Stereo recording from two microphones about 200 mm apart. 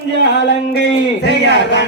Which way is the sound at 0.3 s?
60° left (ahead or behind).